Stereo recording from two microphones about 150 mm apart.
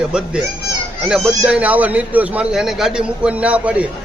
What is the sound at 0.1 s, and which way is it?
A man's voice, 5° right (ahead or behind).